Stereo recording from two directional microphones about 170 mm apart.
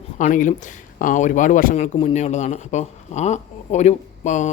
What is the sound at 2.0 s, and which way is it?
A man's voice, 35° left (ahead or behind).